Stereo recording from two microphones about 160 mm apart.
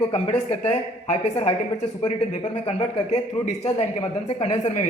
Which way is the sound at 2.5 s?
40° left (ahead or behind).